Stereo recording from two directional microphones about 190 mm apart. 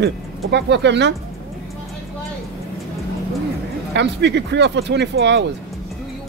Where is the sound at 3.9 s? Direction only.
65° right (ahead or behind).